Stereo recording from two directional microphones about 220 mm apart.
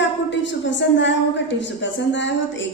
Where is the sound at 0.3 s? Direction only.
55° left (ahead or behind).